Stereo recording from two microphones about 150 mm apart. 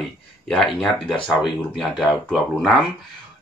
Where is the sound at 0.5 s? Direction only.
5° left (ahead or behind).